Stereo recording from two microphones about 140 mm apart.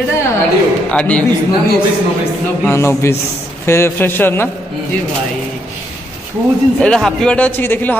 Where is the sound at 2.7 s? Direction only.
20° left (ahead or behind).